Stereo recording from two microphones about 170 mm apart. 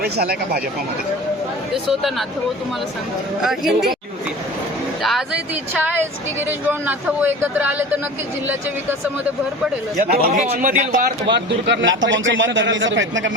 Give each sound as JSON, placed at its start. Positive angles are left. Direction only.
{"t": 0.0, "sound": "speech", "side_deg": -70}
{"t": 1.7, "sound": "speech", "side_deg": 0}
{"t": 3.4, "sound": "speech", "side_deg": 0}
{"t": 5.0, "sound": "speech", "side_deg": -5}
{"t": 10.1, "sound": "a man's voice", "side_deg": -60}
{"t": 11.3, "sound": "a man's voice", "side_deg": -90}